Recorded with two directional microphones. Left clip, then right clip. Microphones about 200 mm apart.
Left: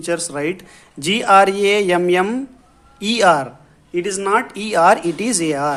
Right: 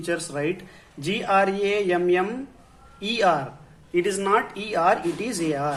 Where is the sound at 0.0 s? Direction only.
25° left (ahead or behind).